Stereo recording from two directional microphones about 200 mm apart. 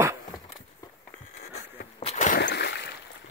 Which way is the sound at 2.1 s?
40° left (ahead or behind).